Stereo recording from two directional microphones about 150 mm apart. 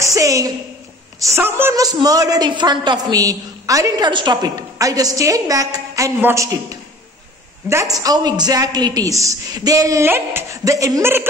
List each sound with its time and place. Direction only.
0.0 s a woman's voice: 20° right (ahead or behind)
1.8 s a woman's voice: 25° right (ahead or behind)